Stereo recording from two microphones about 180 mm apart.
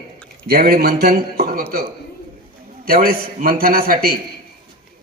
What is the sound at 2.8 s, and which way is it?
A man's voice, 55° right (ahead or behind).